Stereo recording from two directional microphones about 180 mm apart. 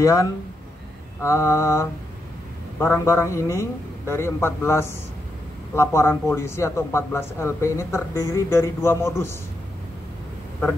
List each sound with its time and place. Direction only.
0.0 s speech: 15° left (ahead or behind)